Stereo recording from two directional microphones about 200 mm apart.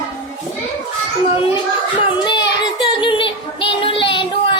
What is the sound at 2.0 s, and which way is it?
Child singing, 25° left (ahead or behind).